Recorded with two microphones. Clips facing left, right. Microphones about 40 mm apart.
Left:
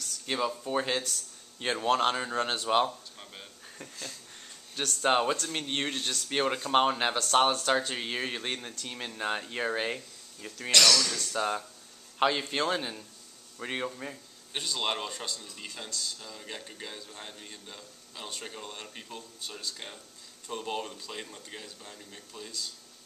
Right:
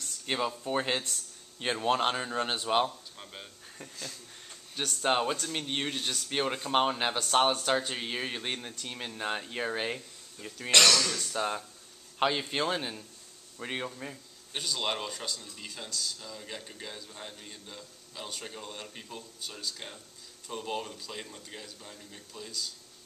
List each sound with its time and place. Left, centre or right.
0.3 s a man's voice: centre
10.7 s speech: right
11.3 s a man's voice: centre